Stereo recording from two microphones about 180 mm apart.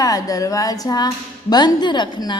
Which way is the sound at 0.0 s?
20° left (ahead or behind).